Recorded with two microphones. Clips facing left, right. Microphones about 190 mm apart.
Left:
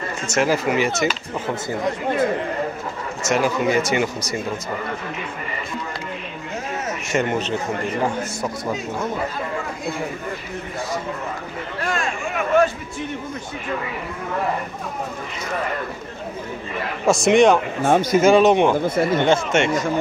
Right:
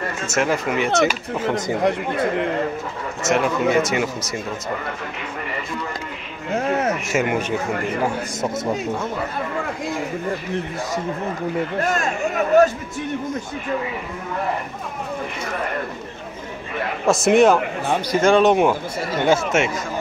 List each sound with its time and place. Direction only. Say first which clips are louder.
0.3 s speech: left 2 dB; centre (ahead or behind)
1.5 s speech: right 4 dB; 65° right (ahead or behind)
3.3 s speech: right 1 dB; centre (ahead or behind)
6.5 s a sound: right 8 dB; 60° right (ahead or behind)
7.1 s speech: right 1 dB; 5° right (ahead or behind)
11.8 s speech: left 1 dB; 40° right (ahead or behind)
17.0 s speech: even; centre (ahead or behind)
18.8 s speech: left 6 dB; 55° left (ahead or behind)
19.2 s speech: even; 5° right (ahead or behind)